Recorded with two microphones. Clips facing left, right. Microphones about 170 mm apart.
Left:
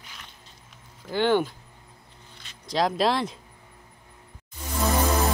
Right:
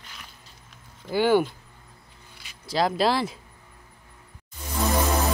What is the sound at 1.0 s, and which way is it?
Speech, 10° right (ahead or behind).